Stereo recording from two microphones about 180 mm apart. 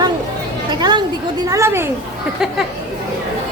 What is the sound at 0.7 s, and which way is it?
A woman's voice, 25° right (ahead or behind).